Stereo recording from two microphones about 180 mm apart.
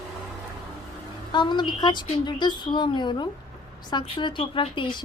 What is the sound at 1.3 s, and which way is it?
Speech, 25° left (ahead or behind).